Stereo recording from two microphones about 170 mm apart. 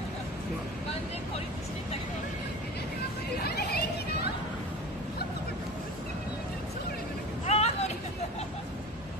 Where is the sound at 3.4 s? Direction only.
70° left (ahead or behind).